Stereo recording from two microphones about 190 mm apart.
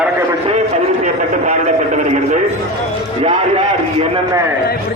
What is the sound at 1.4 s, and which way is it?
Speech, 40° right (ahead or behind).